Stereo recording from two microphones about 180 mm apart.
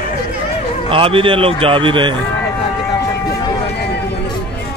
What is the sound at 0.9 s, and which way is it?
A man's voice, 30° right (ahead or behind).